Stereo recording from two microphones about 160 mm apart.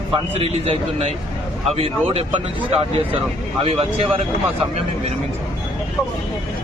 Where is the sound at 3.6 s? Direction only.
40° right (ahead or behind).